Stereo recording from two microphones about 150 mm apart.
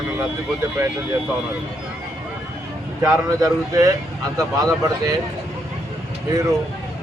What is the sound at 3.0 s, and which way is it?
Speech, 25° right (ahead or behind).